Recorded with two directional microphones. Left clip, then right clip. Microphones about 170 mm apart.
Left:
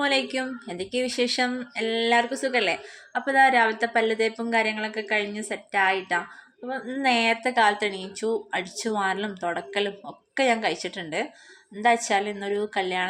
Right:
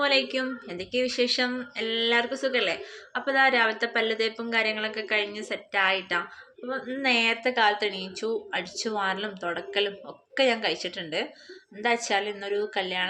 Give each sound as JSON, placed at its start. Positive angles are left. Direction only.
{"t": 0.0, "sound": "speech", "side_deg": 30}